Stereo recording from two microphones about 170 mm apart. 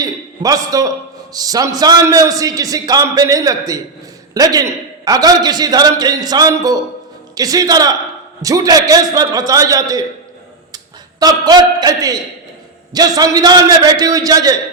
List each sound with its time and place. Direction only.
0.0 s a man's voice: 20° right (ahead or behind)
11.2 s a man's voice: 25° right (ahead or behind)